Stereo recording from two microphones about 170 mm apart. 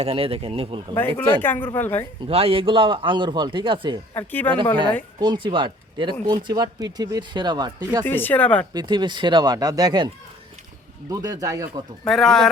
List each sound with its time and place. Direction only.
0.0 s speech: 35° right (ahead or behind)
0.9 s speech: 10° left (ahead or behind)
2.2 s speech: 35° right (ahead or behind)
4.1 s speech: 10° left (ahead or behind)
5.2 s speech: 25° right (ahead or behind)
8.0 s speech: 10° left (ahead or behind)
8.7 s speech: 25° right (ahead or behind)
11.1 s speech: 20° right (ahead or behind)
12.0 s speech: centre (ahead or behind)